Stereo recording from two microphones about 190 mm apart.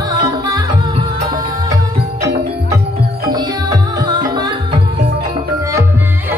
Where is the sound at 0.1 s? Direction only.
20° right (ahead or behind).